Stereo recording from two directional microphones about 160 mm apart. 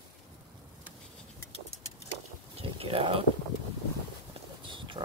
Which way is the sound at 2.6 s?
35° right (ahead or behind).